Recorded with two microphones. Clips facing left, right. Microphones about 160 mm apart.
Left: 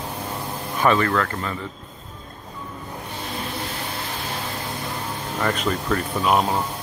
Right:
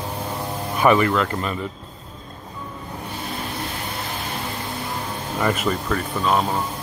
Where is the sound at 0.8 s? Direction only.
15° right (ahead or behind).